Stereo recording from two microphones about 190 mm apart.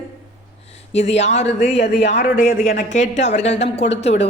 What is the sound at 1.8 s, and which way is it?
A woman's voice, 60° left (ahead or behind).